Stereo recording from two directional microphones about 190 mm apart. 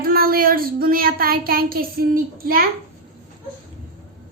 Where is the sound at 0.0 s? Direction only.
50° right (ahead or behind).